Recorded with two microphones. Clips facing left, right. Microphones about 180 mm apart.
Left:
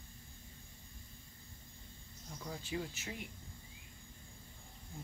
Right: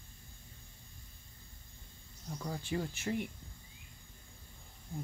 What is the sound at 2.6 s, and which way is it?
Speech, 55° right (ahead or behind).